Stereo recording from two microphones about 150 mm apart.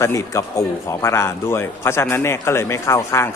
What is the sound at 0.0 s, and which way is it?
Speech, 20° left (ahead or behind).